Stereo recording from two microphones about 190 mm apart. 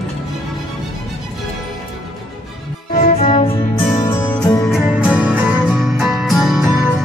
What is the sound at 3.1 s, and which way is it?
Music, 30° left (ahead or behind).